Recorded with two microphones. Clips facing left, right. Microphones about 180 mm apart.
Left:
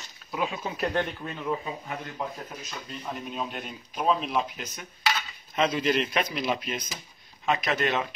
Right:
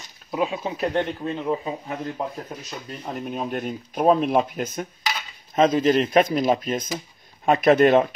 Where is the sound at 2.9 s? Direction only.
50° right (ahead or behind).